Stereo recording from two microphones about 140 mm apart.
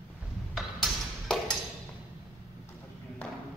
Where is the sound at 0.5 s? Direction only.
Centre (ahead or behind).